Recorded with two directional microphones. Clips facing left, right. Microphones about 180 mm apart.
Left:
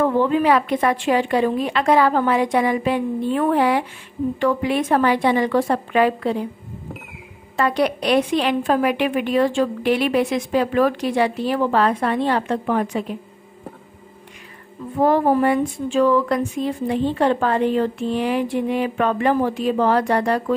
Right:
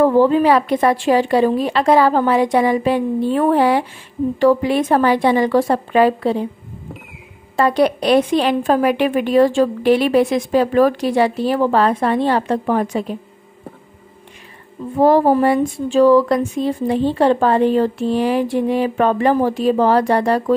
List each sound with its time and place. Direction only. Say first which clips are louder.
0.0 s a woman's voice: right 5 dB; 35° right (ahead or behind)
7.5 s a woman's voice: right 4 dB; 35° right (ahead or behind)
15.0 s a woman's voice: right 4 dB; 30° right (ahead or behind)